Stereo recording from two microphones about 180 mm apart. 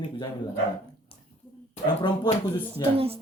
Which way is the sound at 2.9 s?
35° right (ahead or behind).